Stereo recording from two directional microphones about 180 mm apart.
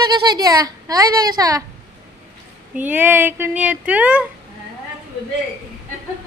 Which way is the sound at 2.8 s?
10° right (ahead or behind).